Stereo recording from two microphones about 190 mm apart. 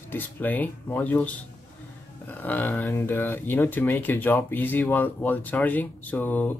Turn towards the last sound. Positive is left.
turn(degrees=10)  # may be behind; listen again after turning